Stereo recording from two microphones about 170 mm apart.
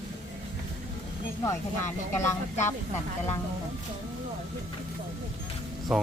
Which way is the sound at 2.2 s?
15° left (ahead or behind).